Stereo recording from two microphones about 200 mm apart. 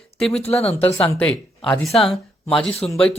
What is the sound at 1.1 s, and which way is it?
A man's voice, 5° left (ahead or behind).